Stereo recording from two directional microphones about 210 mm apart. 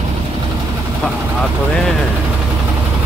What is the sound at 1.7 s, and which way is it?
Speech, 5° left (ahead or behind).